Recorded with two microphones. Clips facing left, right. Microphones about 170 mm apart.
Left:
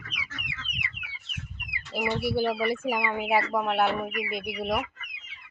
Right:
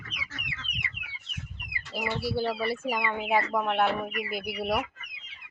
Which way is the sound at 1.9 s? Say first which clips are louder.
Left 3 dB; 15° left (ahead or behind).